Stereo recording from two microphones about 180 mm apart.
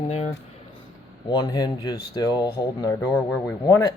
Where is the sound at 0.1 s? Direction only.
35° left (ahead or behind).